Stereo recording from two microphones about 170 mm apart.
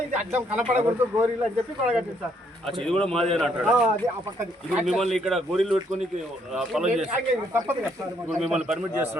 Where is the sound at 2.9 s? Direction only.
5° left (ahead or behind).